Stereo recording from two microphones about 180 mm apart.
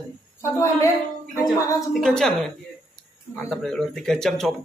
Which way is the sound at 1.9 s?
5° left (ahead or behind).